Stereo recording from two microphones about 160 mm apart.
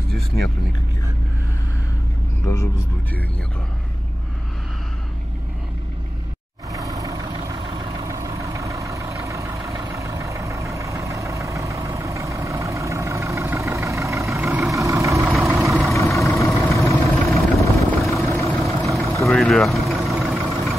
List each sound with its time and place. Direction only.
2.4 s speech: 20° left (ahead or behind)
6.7 s vehicle: 20° right (ahead or behind)
8.1 s vehicle: 20° right (ahead or behind)
15.8 s vehicle: centre (ahead or behind)
16.6 s vehicle: 20° left (ahead or behind)
17.3 s vehicle: centre (ahead or behind)